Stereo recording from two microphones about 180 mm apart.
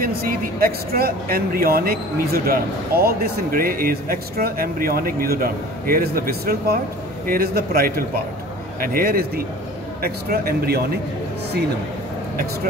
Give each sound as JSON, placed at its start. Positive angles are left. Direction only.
{"t": 0.0, "sound": "speech", "side_deg": -55}